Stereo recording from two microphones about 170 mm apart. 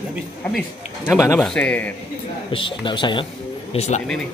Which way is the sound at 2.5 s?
30° left (ahead or behind).